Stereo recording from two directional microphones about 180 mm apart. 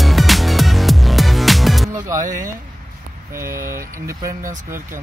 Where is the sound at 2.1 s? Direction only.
45° right (ahead or behind).